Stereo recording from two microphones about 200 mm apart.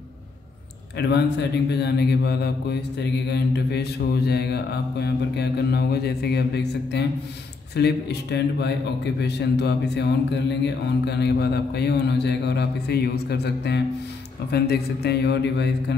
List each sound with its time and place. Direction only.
0.9 s speech: 60° left (ahead or behind)